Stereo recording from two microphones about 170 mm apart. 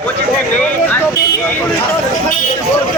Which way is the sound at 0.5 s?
10° left (ahead or behind).